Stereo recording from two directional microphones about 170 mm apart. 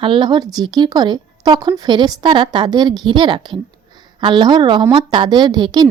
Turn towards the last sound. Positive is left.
turn(degrees=-25)  # may be behind; listen again after turning